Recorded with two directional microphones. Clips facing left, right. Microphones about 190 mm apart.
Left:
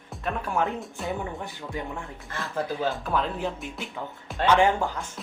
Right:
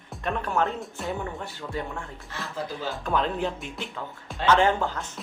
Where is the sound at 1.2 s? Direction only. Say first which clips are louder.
Even; 15° left (ahead or behind).